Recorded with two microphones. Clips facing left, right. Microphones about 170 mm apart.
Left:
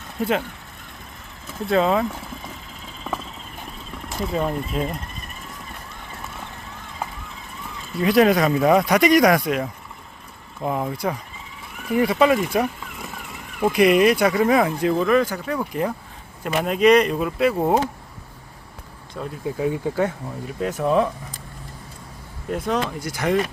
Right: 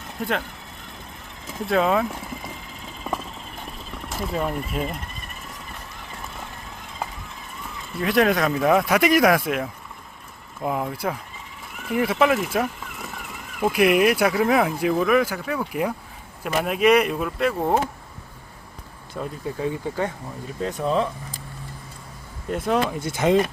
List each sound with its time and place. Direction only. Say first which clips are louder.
1.7 s speech: left 1 dB; centre (ahead or behind)
4.1 s speech: left 2 dB; centre (ahead or behind)
8.0 s speech: left 3 dB; centre (ahead or behind)
19.2 s speech: right 1 dB; centre (ahead or behind)
19.5 s speech: left 4 dB; 10° left (ahead or behind)
22.4 s speech: right 1 dB; centre (ahead or behind)
23.0 s speech: right 2 dB; 25° right (ahead or behind)